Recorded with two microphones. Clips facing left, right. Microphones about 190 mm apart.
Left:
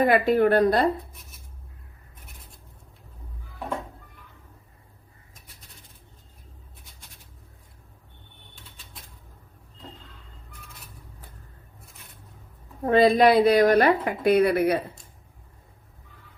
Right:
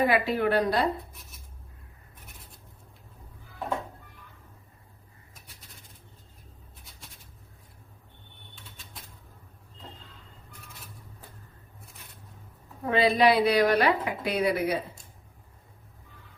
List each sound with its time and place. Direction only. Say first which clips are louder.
0.0 s a woman's voice: left 5 dB; 50° left (ahead or behind)
12.8 s a woman's voice: left 5 dB; 45° left (ahead or behind)